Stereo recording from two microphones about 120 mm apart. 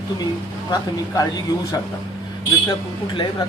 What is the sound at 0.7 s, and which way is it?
Speech, 30° left (ahead or behind).